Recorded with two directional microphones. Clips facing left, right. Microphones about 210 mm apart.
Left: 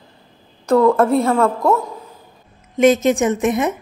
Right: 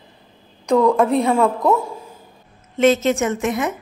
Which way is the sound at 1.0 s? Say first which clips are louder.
Left 1 dB; centre (ahead or behind).